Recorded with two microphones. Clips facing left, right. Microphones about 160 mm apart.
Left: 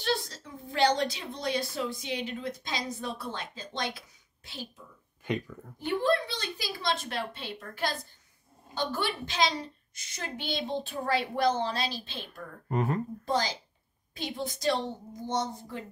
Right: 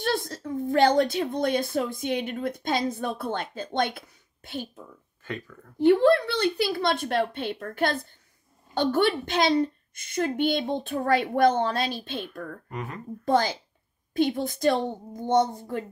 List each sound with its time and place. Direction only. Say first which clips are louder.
0.0 s a woman's voice: right 4 dB; 50° right (ahead or behind)
5.2 s speech: left 4 dB; 15° left (ahead or behind)
5.8 s a woman's voice: right 9 dB; 70° right (ahead or behind)
12.6 s speech: left 7 dB; 35° left (ahead or behind)
13.2 s a woman's voice: right 12 dB; 55° right (ahead or behind)